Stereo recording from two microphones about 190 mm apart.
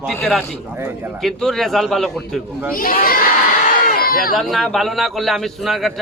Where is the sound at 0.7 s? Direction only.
10° right (ahead or behind).